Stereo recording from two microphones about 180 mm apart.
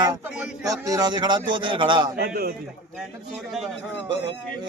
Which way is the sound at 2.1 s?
60° right (ahead or behind).